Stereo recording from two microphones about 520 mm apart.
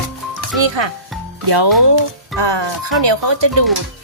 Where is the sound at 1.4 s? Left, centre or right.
Right.